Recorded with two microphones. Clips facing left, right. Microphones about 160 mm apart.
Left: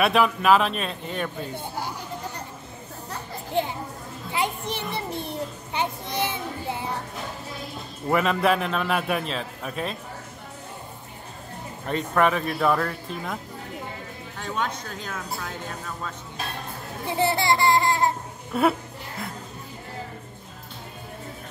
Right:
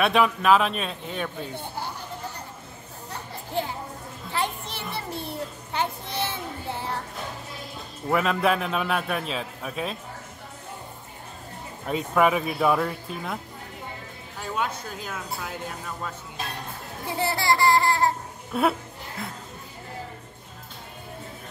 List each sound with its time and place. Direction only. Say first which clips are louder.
0.0 s a man's voice: left 1 dB; centre (ahead or behind)
4.3 s children playing: left 2 dB; 15° left (ahead or behind)
8.1 s a man's voice: left 1 dB; centre (ahead or behind)
11.9 s speech: even; 5° right (ahead or behind)
14.4 s speech: even; 10° right (ahead or behind)
17.2 s a sound: left 1 dB; 20° left (ahead or behind)
18.5 s a woman's voice: left 2 dB; centre (ahead or behind)